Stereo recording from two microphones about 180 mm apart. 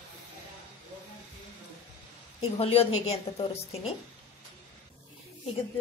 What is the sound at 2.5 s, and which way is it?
Speech, 35° left (ahead or behind).